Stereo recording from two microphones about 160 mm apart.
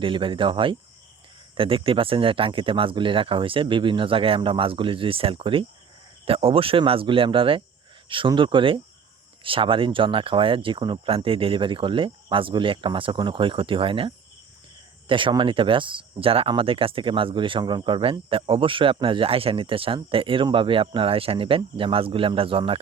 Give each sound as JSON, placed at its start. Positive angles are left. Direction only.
{"t": 0.0, "sound": "speech", "side_deg": -30}